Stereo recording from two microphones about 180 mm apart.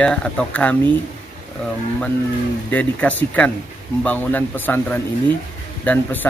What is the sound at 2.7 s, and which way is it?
A man's voice, 10° left (ahead or behind).